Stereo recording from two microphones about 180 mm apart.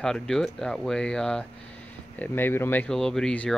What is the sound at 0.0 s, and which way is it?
Speech, 5° left (ahead or behind).